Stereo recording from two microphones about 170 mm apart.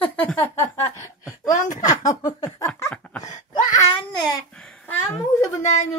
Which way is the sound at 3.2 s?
25° left (ahead or behind).